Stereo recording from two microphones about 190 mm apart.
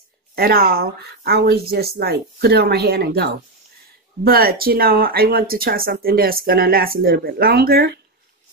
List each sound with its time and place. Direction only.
0.4 s speech: 55° right (ahead or behind)